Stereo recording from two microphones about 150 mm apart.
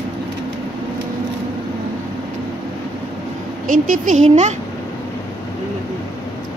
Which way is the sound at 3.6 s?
65° right (ahead or behind).